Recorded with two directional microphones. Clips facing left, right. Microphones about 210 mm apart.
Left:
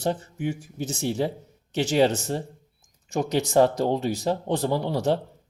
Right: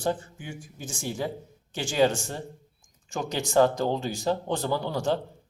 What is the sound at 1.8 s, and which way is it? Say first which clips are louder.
A man's voice: left 2 dB; 35° left (ahead or behind).